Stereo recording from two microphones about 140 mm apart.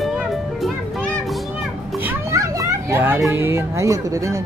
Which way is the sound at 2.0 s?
20° right (ahead or behind).